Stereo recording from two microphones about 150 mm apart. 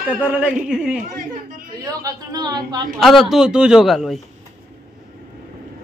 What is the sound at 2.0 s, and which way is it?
Speech, 25° right (ahead or behind).